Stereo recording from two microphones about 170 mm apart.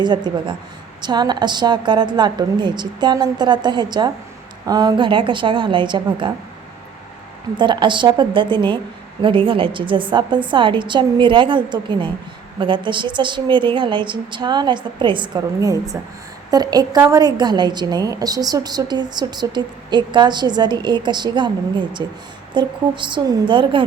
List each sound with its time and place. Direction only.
0.0 s a woman's voice: 25° right (ahead or behind)
7.5 s a woman's voice: 30° right (ahead or behind)